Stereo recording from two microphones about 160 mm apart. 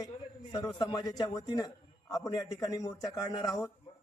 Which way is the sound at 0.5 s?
30° left (ahead or behind).